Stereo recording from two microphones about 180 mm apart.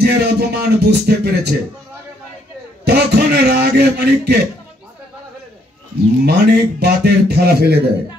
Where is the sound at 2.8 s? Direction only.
65° right (ahead or behind).